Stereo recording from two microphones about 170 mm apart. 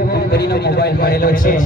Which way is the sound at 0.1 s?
70° left (ahead or behind).